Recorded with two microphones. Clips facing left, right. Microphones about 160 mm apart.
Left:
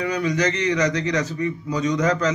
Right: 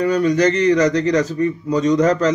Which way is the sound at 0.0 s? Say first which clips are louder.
Right 7 dB; 35° right (ahead or behind).